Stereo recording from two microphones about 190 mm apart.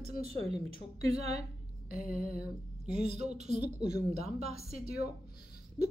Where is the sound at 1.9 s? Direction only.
50° left (ahead or behind).